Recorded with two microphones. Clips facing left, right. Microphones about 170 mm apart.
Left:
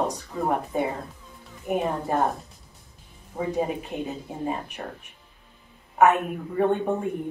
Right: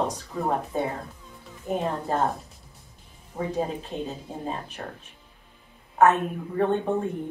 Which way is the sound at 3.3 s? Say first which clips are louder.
Left 2 dB; 10° left (ahead or behind).